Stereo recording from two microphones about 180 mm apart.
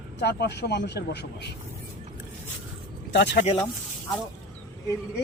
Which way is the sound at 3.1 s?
70° left (ahead or behind).